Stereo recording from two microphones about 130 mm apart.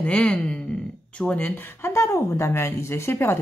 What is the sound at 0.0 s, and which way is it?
Speech, 10° left (ahead or behind).